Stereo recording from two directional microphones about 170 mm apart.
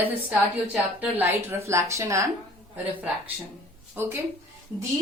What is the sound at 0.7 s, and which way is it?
Speech, 10° right (ahead or behind).